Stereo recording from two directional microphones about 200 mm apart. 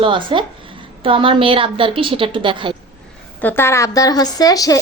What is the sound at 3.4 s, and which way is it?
A woman's voice, 10° left (ahead or behind).